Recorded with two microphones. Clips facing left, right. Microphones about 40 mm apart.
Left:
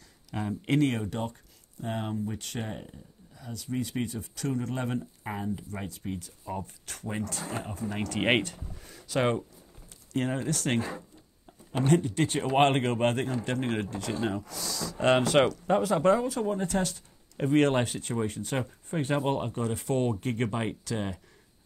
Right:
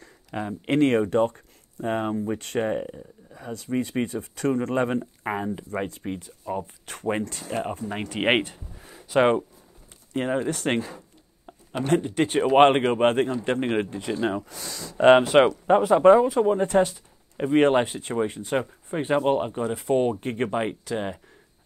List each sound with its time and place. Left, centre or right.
0.4 s speech: right
0.7 s speech: right
6.4 s speech: right
7.0 s speech: right
7.9 s speech: right
8.7 s a sound: right
10.1 s speech: right
11.9 s speech: right
15.2 s speech: centre
16.9 s speech: centre